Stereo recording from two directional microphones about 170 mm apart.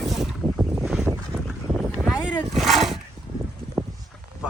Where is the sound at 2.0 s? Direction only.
5° right (ahead or behind).